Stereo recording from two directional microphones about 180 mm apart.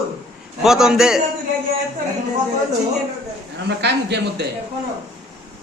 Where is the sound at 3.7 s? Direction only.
70° right (ahead or behind).